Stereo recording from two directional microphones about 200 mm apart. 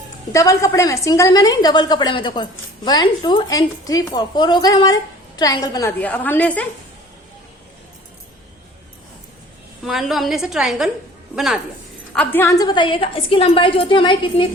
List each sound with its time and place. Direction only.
0.3 s a woman's voice: 15° left (ahead or behind)
9.8 s a woman's voice: centre (ahead or behind); by 14.4 s 25° left (ahead or behind)